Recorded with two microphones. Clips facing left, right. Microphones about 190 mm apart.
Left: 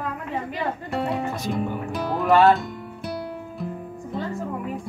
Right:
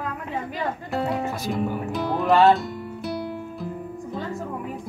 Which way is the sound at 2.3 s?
20° right (ahead or behind).